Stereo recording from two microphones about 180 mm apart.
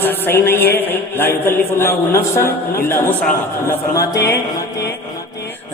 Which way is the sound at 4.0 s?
20° left (ahead or behind).